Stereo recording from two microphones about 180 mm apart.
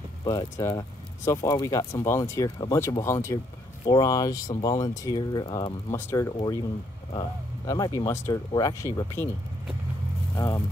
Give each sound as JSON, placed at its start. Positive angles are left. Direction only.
{"t": 0.2, "sound": "speech", "side_deg": 20}
{"t": 5.9, "sound": "speech", "side_deg": 15}
{"t": 10.3, "sound": "speech", "side_deg": 15}